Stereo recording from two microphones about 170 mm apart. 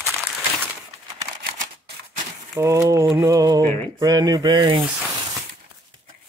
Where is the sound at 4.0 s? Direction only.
20° right (ahead or behind).